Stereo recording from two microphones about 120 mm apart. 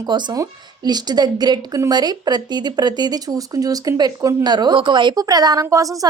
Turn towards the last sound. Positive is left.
turn(degrees=-30)  # may be behind; listen again after turning